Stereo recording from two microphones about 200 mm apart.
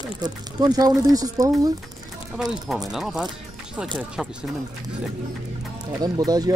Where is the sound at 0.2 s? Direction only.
20° right (ahead or behind).